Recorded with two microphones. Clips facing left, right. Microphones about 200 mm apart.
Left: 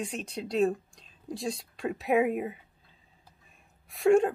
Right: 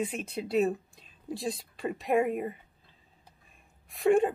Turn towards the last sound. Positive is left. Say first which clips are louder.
# left 2 dB
turn(degrees=0)  # may be behind; listen again after turning